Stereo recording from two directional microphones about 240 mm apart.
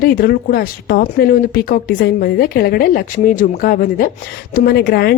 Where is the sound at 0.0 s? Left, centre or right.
Left.